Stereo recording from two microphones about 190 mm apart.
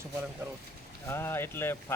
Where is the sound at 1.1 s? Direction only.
10° left (ahead or behind).